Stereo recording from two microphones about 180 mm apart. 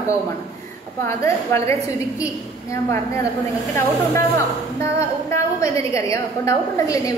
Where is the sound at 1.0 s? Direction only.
15° left (ahead or behind).